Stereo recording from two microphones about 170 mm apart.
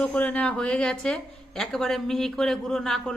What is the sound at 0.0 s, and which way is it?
Speech, 5° left (ahead or behind).